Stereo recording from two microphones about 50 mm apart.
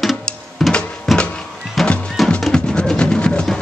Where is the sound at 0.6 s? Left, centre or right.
Centre.